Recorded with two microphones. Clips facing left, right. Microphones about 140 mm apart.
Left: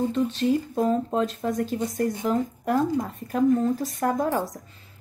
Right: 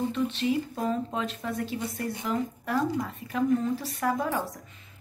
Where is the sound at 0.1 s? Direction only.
40° left (ahead or behind).